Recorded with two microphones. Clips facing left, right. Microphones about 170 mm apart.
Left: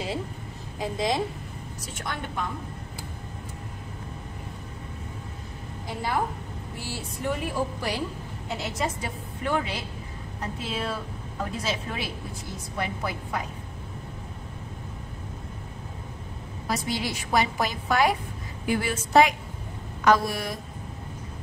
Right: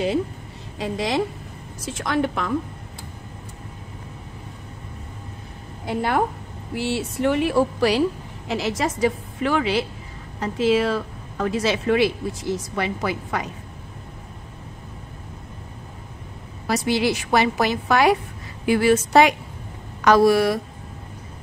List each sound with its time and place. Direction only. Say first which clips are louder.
0.7 s a woman's voice: right 3 dB; 75° right (ahead or behind)
1.9 s a woman's voice: right 12 dB; 90° right
5.9 s a woman's voice: right 7 dB; 65° right (ahead or behind)
6.7 s a woman's voice: right 13 dB; 75° right (ahead or behind); by 13.5 s 90° right
16.6 s a woman's voice: right 8 dB; 75° right (ahead or behind)